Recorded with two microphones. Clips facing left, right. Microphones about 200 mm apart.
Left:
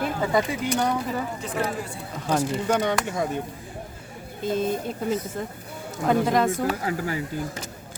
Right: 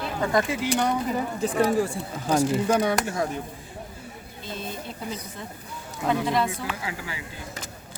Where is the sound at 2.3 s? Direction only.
10° right (ahead or behind).